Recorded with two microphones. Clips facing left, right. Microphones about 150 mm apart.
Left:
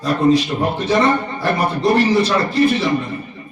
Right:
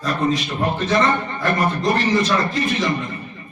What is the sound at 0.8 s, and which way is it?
A man's voice, 10° left (ahead or behind).